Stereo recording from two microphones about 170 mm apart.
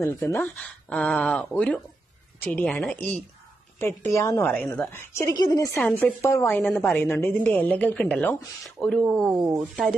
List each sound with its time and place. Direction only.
0.0 s a woman's voice: 15° left (ahead or behind)
5.8 s a woman's voice: 10° left (ahead or behind)
9.3 s speech: 20° right (ahead or behind)